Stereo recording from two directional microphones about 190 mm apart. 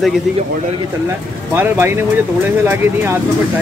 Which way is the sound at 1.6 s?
10° right (ahead or behind).